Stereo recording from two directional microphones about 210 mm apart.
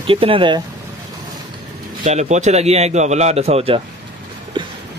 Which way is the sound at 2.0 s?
35° right (ahead or behind).